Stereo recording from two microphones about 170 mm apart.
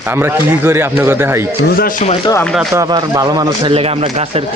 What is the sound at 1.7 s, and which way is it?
Speech, 55° left (ahead or behind).